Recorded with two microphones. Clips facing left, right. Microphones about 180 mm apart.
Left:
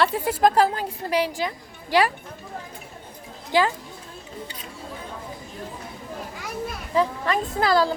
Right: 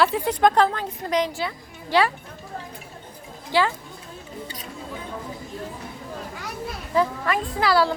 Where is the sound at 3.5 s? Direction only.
15° left (ahead or behind).